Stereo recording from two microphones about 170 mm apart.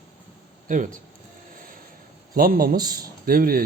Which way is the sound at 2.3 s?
60° right (ahead or behind).